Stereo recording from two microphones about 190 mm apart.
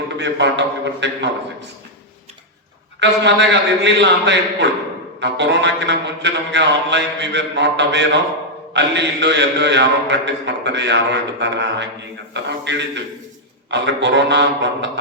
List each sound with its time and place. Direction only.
0.2 s a man's voice: 65° right (ahead or behind)
3.0 s a man's voice: 65° right (ahead or behind)